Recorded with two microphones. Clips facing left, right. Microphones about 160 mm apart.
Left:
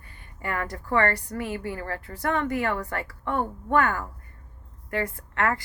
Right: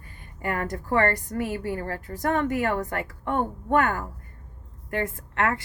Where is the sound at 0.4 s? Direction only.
45° right (ahead or behind).